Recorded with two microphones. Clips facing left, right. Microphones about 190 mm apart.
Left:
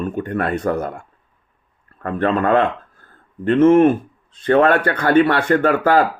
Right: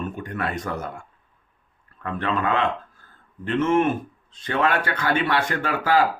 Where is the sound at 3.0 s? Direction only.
55° left (ahead or behind).